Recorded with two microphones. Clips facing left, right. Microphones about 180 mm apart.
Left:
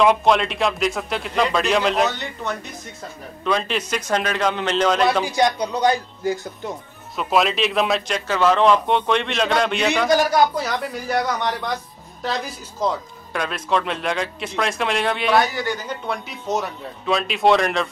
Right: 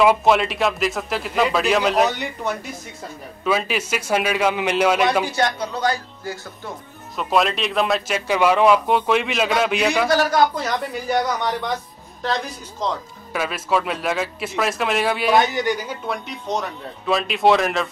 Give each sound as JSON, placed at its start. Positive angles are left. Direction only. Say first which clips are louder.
{"t": 0.0, "sound": "a man's voice", "louder": "right 1 dB", "side_deg": -5}
{"t": 5.2, "sound": "speech", "louder": "left 2 dB", "side_deg": 15}
{"t": 7.2, "sound": "a man's voice", "louder": "left 1 dB", "side_deg": 0}
{"t": 8.3, "sound": "a man's voice", "louder": "right 1 dB", "side_deg": -10}
{"t": 10.0, "sound": "speech", "louder": "left 1 dB", "side_deg": 15}
{"t": 10.6, "sound": "a man's voice", "louder": "right 1 dB", "side_deg": 0}
{"t": 13.3, "sound": "a man's voice", "louder": "right 1 dB", "side_deg": -5}
{"t": 15.3, "sound": "a man's voice", "louder": "right 2 dB", "side_deg": -20}
{"t": 16.1, "sound": "a man's voice", "louder": "left 1 dB", "side_deg": 5}